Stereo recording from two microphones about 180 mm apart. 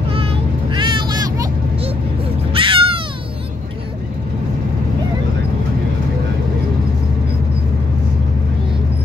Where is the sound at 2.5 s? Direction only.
30° right (ahead or behind).